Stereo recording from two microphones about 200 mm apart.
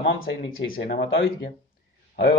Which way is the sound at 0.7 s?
50° left (ahead or behind).